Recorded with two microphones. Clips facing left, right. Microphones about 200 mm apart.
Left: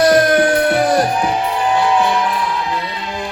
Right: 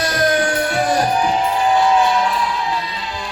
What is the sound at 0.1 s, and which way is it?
Music, 50° left (ahead or behind).